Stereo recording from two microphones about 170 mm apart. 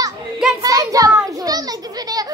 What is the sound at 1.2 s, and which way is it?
Children playing, 20° right (ahead or behind).